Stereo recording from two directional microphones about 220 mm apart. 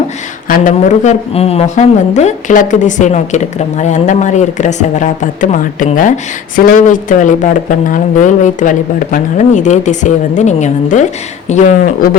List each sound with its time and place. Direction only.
0.4 s a woman's voice: 40° left (ahead or behind)